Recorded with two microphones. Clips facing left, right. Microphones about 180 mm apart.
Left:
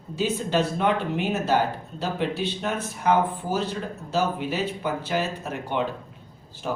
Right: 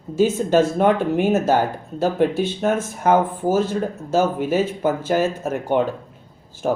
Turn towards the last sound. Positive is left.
turn(degrees=-50)  # may be behind; listen again after turning